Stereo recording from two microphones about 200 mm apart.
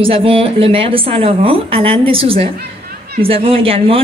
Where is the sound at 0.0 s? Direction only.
25° right (ahead or behind).